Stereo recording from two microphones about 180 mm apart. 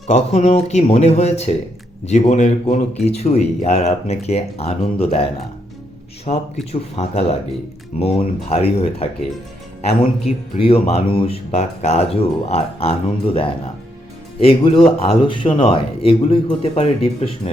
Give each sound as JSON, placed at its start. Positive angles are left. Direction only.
{"t": 0.1, "sound": "speech", "side_deg": 35}
{"t": 6.3, "sound": "speech", "side_deg": 40}